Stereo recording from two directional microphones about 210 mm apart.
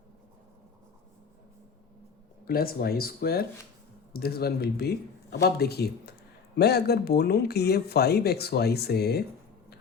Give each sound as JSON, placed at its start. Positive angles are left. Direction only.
{"t": 2.5, "sound": "speech", "side_deg": 45}